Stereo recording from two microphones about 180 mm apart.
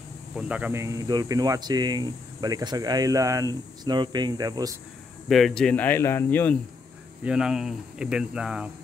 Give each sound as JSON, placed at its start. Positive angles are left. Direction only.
{"t": 0.4, "sound": "speech", "side_deg": -10}
{"t": 5.3, "sound": "speech", "side_deg": 0}
{"t": 7.2, "sound": "speech", "side_deg": -5}